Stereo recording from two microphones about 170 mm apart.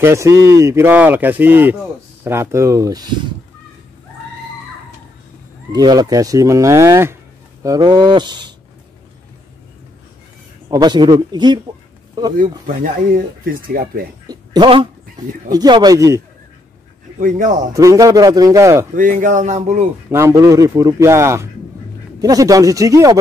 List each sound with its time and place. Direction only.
0.0 s speech: 15° right (ahead or behind)
5.7 s speech: 25° right (ahead or behind)
10.7 s speech: 25° right (ahead or behind)
12.4 s speech: 55° right (ahead or behind)
14.2 s dog: 25° right (ahead or behind)
15.5 s speech: 25° right (ahead or behind)
17.5 s speech: 20° right (ahead or behind)
18.9 s a man's voice: 50° right (ahead or behind)
20.1 s speech: 15° right (ahead or behind)